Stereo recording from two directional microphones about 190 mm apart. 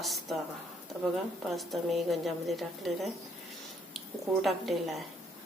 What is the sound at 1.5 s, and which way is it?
A woman's voice, centre (ahead or behind).